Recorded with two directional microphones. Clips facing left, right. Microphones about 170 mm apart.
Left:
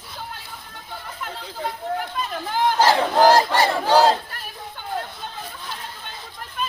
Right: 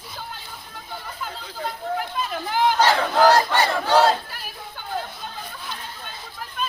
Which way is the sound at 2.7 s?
30° left (ahead or behind).